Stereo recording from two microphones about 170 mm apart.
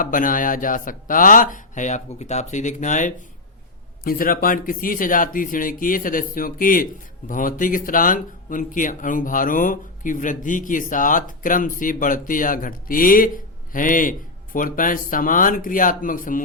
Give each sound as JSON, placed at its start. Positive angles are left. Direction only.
{"t": 0.0, "sound": "speech", "side_deg": 50}
{"t": 4.0, "sound": "speech", "side_deg": 60}